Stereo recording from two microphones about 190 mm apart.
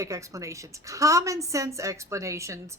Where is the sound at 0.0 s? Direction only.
15° right (ahead or behind).